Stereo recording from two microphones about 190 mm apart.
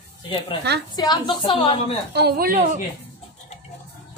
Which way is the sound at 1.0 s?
20° left (ahead or behind).